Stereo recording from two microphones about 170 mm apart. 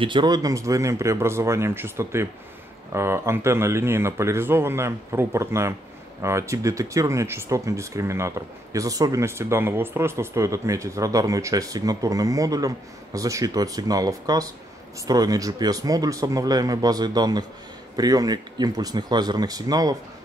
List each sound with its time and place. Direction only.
0.0 s speech: 25° right (ahead or behind)